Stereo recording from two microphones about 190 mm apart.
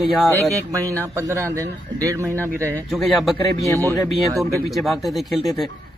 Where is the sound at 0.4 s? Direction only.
15° right (ahead or behind).